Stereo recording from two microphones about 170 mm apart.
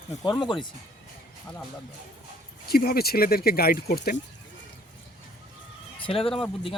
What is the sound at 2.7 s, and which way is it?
Speech, 65° left (ahead or behind).